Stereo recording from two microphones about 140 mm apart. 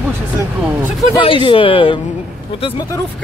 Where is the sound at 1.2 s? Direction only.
35° left (ahead or behind).